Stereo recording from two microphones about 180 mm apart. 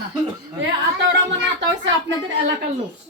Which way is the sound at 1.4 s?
85° right.